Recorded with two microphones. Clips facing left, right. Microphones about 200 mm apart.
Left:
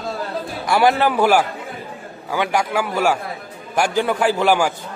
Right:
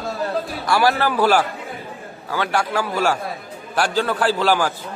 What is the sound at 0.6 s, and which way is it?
Speech, 20° left (ahead or behind).